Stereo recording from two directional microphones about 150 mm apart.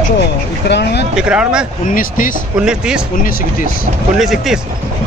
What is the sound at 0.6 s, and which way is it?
Speech, 90° left.